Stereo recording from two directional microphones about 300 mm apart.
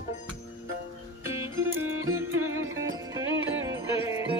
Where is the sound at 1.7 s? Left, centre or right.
Right.